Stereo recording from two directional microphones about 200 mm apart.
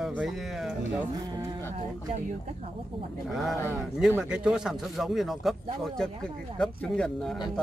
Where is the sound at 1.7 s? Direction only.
35° right (ahead or behind).